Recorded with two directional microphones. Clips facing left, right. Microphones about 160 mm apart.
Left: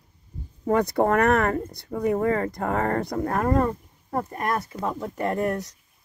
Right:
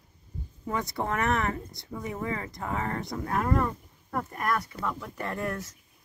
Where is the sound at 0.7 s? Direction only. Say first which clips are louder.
Left 10 dB; 50° left (ahead or behind).